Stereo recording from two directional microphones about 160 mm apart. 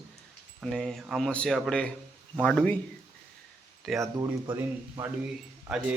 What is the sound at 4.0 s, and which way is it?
Speech, 20° right (ahead or behind).